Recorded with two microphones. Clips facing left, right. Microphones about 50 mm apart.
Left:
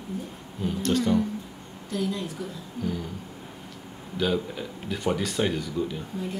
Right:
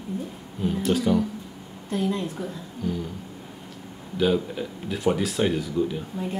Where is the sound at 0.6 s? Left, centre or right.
Centre.